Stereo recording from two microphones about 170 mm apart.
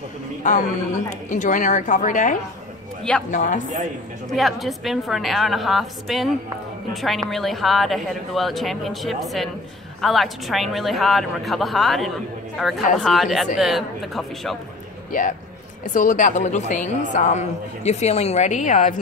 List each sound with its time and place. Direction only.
0.4 s a woman's voice: 45° left (ahead or behind)
3.6 s speech: 50° right (ahead or behind)
4.3 s a woman's voice: centre (ahead or behind)
15.8 s a woman's voice: 50° left (ahead or behind)